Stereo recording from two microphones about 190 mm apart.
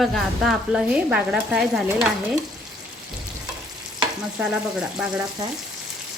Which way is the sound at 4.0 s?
5° right (ahead or behind).